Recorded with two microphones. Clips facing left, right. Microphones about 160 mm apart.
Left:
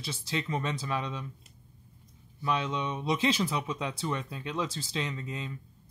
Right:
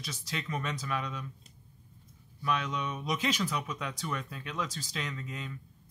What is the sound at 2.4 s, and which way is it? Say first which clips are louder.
Speech: left 2 dB; 25° left (ahead or behind).